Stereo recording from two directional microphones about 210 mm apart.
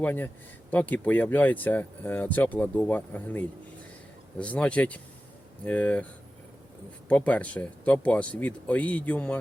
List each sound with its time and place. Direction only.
0.0 s speech: 10° left (ahead or behind)
7.1 s speech: 5° left (ahead or behind)